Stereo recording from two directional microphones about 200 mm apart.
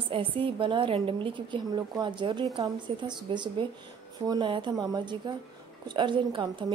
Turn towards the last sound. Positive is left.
turn(degrees=-25)  # may be behind; listen again after turning